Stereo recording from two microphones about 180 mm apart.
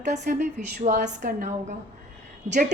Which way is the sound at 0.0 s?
45° right (ahead or behind).